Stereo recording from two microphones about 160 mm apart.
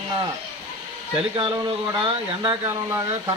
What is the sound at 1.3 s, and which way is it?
Speech, 30° right (ahead or behind).